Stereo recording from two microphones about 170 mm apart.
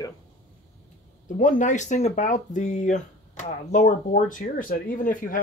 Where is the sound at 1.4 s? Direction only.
50° left (ahead or behind).